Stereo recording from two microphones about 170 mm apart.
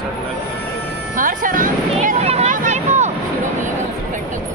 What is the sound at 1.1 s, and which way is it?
Music, 50° right (ahead or behind).